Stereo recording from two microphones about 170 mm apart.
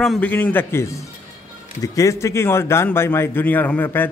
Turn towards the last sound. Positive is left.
turn(degrees=10)  # may be behind; listen again after turning